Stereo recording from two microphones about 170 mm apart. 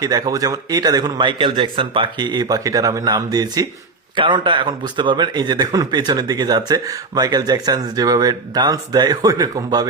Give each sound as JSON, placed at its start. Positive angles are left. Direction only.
{"t": 0.0, "sound": "a man's voice", "side_deg": -20}